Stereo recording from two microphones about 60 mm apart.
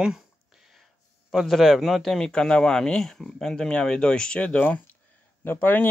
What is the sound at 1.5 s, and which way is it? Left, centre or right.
A man's voice, centre.